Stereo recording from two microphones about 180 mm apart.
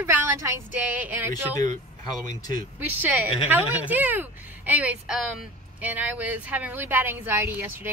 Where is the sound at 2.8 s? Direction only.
10° right (ahead or behind).